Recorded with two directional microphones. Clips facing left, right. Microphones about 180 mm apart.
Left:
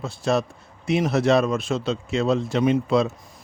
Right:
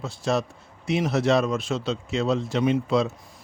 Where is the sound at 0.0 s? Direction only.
55° left (ahead or behind).